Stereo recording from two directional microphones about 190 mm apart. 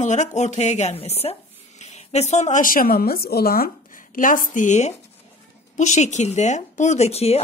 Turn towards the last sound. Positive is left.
turn(degrees=35)  # may be behind; listen again after turning